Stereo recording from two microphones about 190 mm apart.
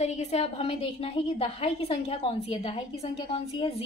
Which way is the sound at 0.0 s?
35° left (ahead or behind).